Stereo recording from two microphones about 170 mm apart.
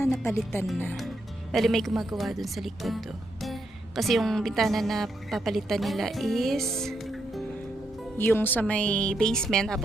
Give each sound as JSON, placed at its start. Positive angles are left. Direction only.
{"t": 0.2, "sound": "speech", "side_deg": 15}
{"t": 1.5, "sound": "speech", "side_deg": 0}
{"t": 8.2, "sound": "speech", "side_deg": 10}